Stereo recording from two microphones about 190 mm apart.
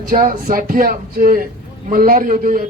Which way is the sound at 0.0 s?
45° right (ahead or behind).